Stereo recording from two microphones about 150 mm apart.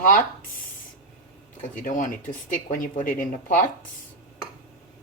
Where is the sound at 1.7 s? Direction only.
55° left (ahead or behind).